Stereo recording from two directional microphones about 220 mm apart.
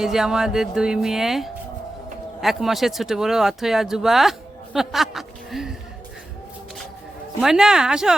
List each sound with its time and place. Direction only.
0.0 s speech: centre (ahead or behind)
7.4 s speech: centre (ahead or behind)